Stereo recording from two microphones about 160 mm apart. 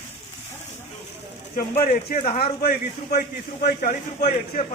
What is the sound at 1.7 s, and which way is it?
Speech, 50° left (ahead or behind).